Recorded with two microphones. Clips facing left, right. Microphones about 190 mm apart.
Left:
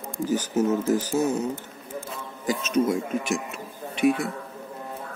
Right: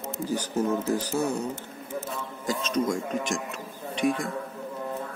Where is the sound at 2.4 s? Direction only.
10° left (ahead or behind).